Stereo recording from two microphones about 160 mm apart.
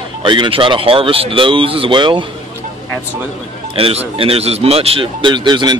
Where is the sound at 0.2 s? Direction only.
30° right (ahead or behind).